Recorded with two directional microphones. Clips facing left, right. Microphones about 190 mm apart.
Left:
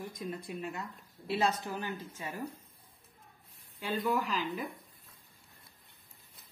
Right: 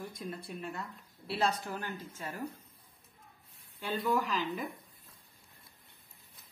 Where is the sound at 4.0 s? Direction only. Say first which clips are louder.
Right 1 dB; 5° left (ahead or behind).